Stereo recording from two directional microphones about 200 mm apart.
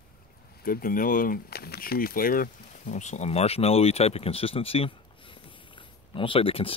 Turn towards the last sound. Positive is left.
turn(degrees=25)  # may be behind; listen again after turning